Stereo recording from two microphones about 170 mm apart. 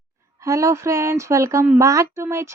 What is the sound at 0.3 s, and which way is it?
Speech, 20° right (ahead or behind).